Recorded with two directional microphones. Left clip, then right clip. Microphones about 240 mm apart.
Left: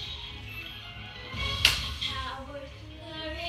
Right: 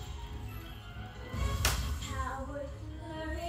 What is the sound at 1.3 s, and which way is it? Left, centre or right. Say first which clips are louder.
Music: left 10 dB; centre.